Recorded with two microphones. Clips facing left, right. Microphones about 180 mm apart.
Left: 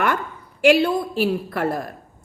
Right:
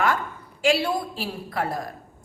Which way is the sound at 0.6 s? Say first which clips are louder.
Left 6 dB; 60° left (ahead or behind).